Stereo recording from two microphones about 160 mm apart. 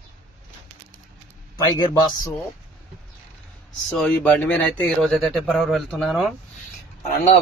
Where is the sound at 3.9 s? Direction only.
5° left (ahead or behind).